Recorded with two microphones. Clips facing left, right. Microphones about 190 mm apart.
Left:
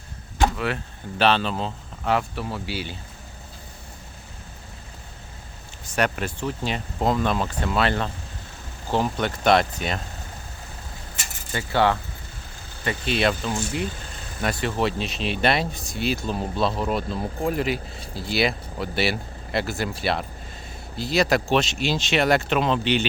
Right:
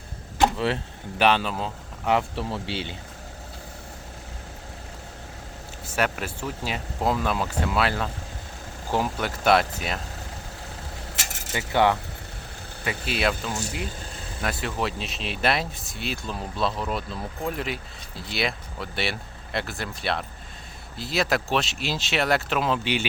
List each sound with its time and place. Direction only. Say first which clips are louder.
0.5 s speech: right 2 dB; 30° right (ahead or behind)
1.2 s speech: left 1 dB; 10° right (ahead or behind)
2.0 s speech: even; 25° right (ahead or behind)
5.8 s speech: left 2 dB; 5° right (ahead or behind)
11.2 s keys jangling: right 3 dB; 85° right
11.5 s speech: even; 15° right (ahead or behind)
12.8 s speech: left 3 dB; 5° right (ahead or behind)